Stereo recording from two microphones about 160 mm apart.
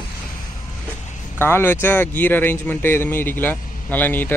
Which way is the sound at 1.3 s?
15° left (ahead or behind).